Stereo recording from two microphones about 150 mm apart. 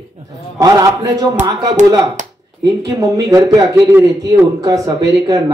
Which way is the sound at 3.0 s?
25° right (ahead or behind).